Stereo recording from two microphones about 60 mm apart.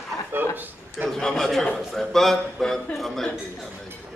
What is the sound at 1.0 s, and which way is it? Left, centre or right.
A man's voice, centre.